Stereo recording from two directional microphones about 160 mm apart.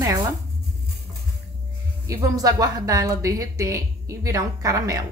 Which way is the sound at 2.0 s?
20° right (ahead or behind).